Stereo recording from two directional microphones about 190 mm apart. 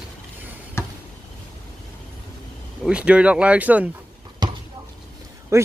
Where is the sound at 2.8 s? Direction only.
5° right (ahead or behind).